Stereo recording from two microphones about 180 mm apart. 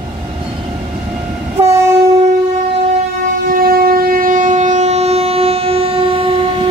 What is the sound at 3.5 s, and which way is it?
Train, 55° right (ahead or behind).